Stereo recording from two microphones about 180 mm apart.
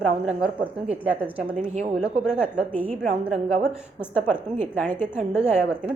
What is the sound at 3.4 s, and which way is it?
Speech, 35° right (ahead or behind).